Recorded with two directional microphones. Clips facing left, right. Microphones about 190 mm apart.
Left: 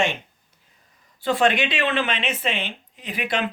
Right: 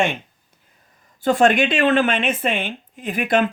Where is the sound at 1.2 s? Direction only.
45° right (ahead or behind).